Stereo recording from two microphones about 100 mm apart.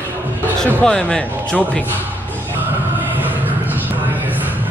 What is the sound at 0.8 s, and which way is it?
Speech, 5° left (ahead or behind).